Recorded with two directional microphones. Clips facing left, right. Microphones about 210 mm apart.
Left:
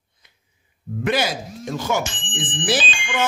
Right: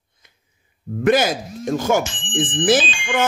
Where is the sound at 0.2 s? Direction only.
45° right (ahead or behind).